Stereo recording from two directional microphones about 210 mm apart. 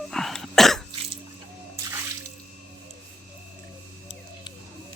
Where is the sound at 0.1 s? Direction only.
Centre (ahead or behind).